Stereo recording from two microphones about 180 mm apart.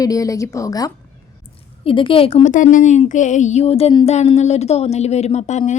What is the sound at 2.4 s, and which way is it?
Speech, 45° left (ahead or behind).